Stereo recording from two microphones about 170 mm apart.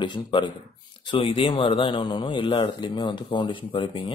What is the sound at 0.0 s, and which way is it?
Speech, 25° left (ahead or behind).